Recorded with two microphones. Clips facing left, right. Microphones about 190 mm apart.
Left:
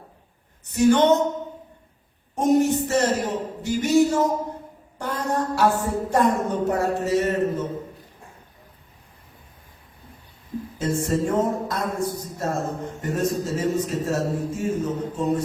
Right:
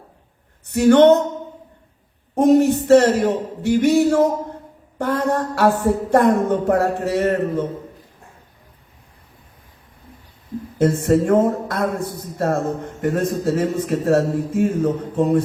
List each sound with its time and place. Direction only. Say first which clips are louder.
0.8 s a woman's voice: right 5 dB; 60° right (ahead or behind)
2.3 s a sound: right 5 dB; 60° right (ahead or behind)
2.8 s a woman's voice: right 9 dB; 60° right (ahead or behind)
11.0 s a woman's voice: right 6 dB; 55° right (ahead or behind)